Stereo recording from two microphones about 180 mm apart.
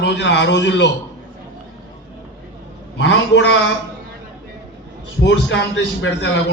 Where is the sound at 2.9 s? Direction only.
90° left.